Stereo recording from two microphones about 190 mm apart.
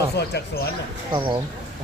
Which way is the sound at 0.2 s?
60° left (ahead or behind).